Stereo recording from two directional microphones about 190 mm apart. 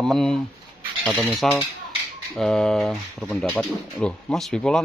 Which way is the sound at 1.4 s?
Centre (ahead or behind).